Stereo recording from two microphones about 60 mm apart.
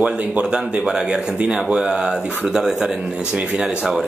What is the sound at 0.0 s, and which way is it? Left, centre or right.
Speech, right.